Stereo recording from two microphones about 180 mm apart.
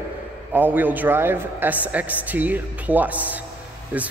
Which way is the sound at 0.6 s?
10° right (ahead or behind).